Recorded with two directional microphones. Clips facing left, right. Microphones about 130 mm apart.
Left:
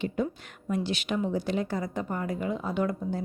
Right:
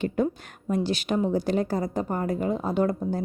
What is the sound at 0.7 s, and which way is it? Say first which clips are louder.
A woman's voice: right 4 dB; 40° right (ahead or behind).